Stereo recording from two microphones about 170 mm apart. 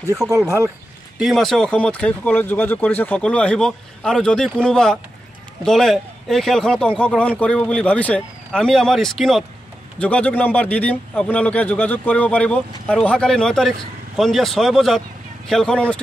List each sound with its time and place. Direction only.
0.2 s speech: 20° right (ahead or behind)
1.1 s a man's voice: centre (ahead or behind)